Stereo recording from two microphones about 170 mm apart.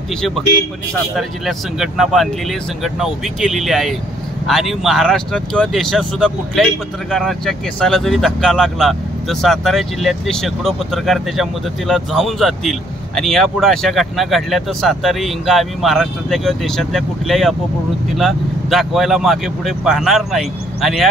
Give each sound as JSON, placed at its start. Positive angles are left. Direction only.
{"t": 1.1, "sound": "speech", "side_deg": 0}